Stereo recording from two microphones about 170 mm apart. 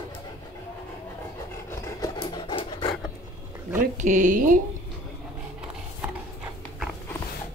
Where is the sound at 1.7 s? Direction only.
20° left (ahead or behind).